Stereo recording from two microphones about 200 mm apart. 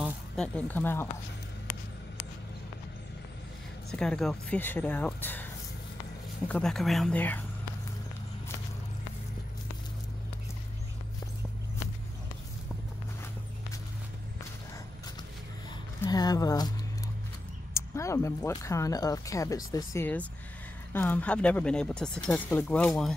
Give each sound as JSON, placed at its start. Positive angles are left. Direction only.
{"t": 0.0, "sound": "speech", "side_deg": 5}
{"t": 3.9, "sound": "speech", "side_deg": 5}
{"t": 16.0, "sound": "speech", "side_deg": 20}
{"t": 17.7, "sound": "speech", "side_deg": 15}